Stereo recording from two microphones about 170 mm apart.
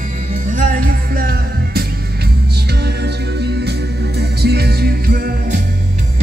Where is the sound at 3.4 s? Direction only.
80° right; by 5.5 s 65° right (ahead or behind).